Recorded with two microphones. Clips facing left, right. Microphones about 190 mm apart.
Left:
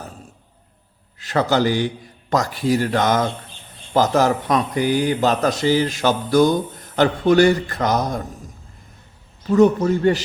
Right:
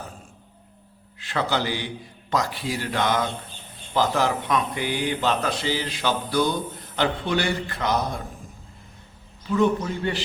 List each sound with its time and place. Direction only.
1.2 s a man's voice: 40° left (ahead or behind)
9.5 s speech: 45° left (ahead or behind)